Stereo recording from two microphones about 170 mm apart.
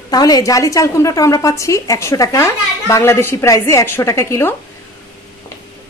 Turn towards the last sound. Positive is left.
turn(degrees=15)  # may be behind; listen again after turning